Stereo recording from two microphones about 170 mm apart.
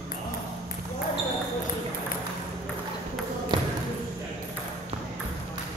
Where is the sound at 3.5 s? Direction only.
25° right (ahead or behind).